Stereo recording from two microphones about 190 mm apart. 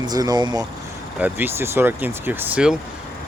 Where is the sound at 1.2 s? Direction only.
10° right (ahead or behind).